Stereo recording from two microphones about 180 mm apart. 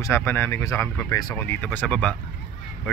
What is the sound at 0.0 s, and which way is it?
Speech, 15° left (ahead or behind).